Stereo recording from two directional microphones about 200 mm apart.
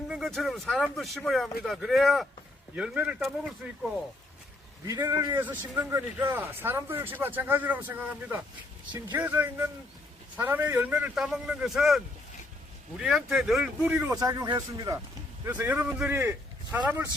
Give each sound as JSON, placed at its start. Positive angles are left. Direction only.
{"t": 0.1, "sound": "a man's voice", "side_deg": 0}
{"t": 4.9, "sound": "a man's voice", "side_deg": -15}
{"t": 8.9, "sound": "speech", "side_deg": -20}
{"t": 9.1, "sound": "a man's voice", "side_deg": -10}